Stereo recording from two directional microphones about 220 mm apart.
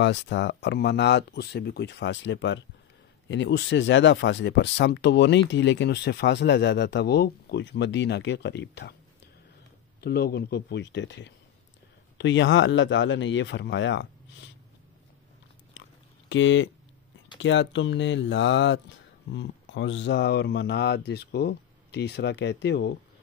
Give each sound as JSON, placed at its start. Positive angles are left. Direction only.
{"t": 0.0, "sound": "speech", "side_deg": 50}
{"t": 16.3, "sound": "speech", "side_deg": 55}